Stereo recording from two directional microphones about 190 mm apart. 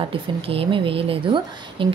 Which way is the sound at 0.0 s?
30° right (ahead or behind).